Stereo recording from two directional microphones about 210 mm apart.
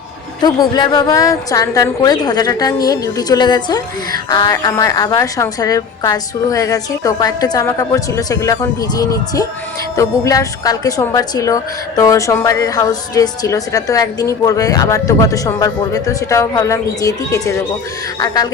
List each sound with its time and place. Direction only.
0.4 s a woman's voice: 20° left (ahead or behind)